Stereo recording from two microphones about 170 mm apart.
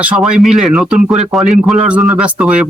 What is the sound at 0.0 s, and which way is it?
A man's voice, 5° right (ahead or behind).